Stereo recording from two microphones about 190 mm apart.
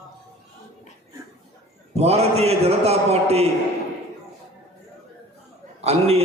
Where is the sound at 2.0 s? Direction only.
35° right (ahead or behind).